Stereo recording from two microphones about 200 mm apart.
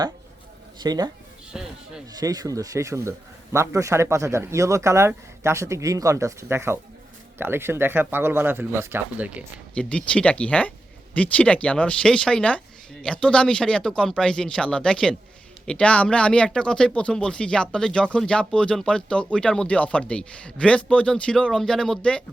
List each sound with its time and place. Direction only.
0.8 s speech: 20° right (ahead or behind)
1.5 s speech: 5° right (ahead or behind)
2.1 s speech: 20° right (ahead or behind)
9.7 s speech: 5° left (ahead or behind)